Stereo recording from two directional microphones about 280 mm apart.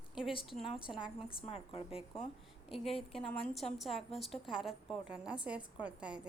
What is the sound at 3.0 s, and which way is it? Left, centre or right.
A woman's voice, centre.